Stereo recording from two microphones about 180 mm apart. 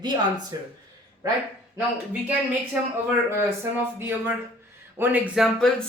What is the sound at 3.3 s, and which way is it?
Speech, 15° right (ahead or behind).